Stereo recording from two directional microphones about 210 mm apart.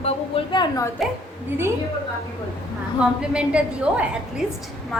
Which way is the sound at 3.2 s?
5° right (ahead or behind).